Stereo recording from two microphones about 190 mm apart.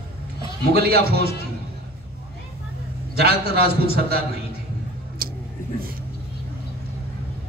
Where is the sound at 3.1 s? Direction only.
55° right (ahead or behind).